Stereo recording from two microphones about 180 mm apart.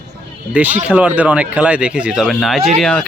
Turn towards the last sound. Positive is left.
turn(degrees=0)  # may be behind; listen again after turning